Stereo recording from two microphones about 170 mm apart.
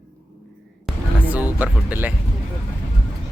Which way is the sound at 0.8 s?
10° right (ahead or behind).